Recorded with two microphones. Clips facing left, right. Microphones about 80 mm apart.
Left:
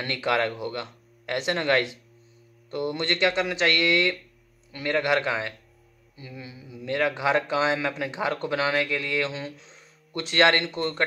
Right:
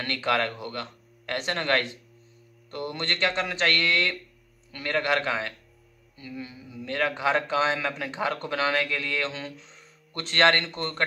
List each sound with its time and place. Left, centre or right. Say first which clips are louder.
0.0 s speech: left 1 dB; centre
10.8 s a man's voice: left 2 dB; centre